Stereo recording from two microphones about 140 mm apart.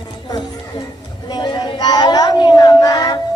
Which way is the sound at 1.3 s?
30° left (ahead or behind).